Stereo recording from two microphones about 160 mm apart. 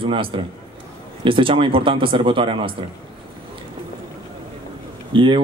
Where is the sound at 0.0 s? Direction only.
30° right (ahead or behind).